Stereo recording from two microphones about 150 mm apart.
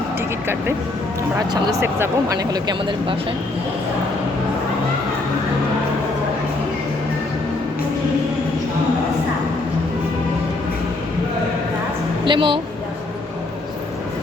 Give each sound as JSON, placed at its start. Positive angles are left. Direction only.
{"t": 1.8, "sound": "speech", "side_deg": -20}
{"t": 12.2, "sound": "a woman's voice", "side_deg": -35}